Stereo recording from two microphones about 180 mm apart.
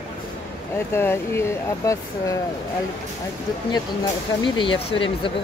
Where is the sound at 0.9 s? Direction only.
15° left (ahead or behind).